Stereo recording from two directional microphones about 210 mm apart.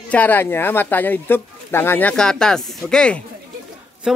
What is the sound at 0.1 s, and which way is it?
Speech, 10° left (ahead or behind).